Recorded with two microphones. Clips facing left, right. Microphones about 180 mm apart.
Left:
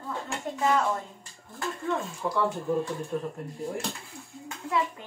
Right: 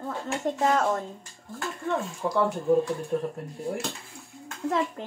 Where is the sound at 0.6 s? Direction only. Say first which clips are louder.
Even; 45° right (ahead or behind).